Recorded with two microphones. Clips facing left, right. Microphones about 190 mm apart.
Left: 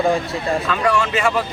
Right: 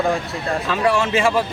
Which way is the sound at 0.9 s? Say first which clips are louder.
Right 1 dB; 25° right (ahead or behind).